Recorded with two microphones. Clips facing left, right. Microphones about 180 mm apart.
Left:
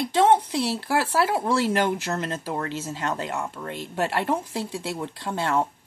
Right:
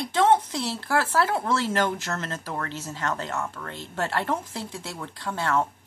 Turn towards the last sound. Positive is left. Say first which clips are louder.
# left 1 dB
turn(degrees=15)  # may be behind; listen again after turning